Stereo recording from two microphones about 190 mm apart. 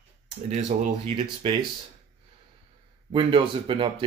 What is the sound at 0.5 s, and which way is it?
Speech, 35° right (ahead or behind).